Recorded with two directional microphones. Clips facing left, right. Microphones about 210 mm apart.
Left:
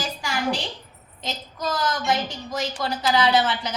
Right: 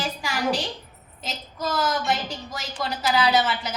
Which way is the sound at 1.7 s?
Centre (ahead or behind).